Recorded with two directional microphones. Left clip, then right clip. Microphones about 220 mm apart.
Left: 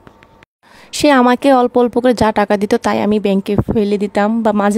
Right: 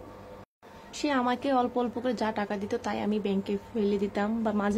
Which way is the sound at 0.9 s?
50° left (ahead or behind).